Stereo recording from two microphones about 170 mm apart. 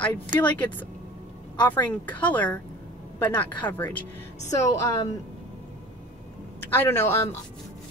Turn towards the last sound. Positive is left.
turn(degrees=15)  # may be behind; listen again after turning